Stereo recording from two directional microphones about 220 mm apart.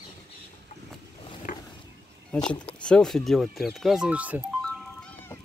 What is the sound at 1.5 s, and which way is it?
Roaring cats, 35° left (ahead or behind).